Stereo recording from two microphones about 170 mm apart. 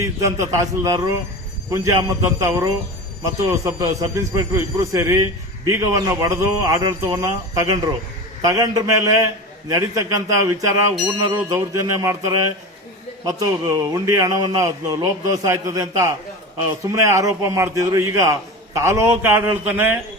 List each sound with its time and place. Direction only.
0.0 s a man's voice: 15° right (ahead or behind)
11.4 s a man's voice: 20° right (ahead or behind)